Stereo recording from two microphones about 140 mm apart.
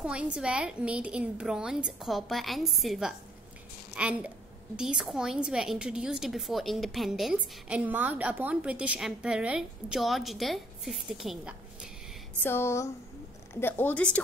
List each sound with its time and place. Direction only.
0.0 s a woman's voice: 5° right (ahead or behind)
12.4 s speech: 20° left (ahead or behind)